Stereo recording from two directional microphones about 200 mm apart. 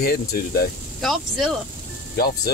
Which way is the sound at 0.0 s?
50° left (ahead or behind).